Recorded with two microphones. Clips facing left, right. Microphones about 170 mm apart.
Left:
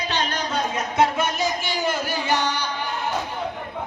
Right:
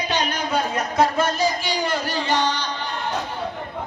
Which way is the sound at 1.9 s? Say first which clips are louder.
Right 1 dB; 10° left (ahead or behind).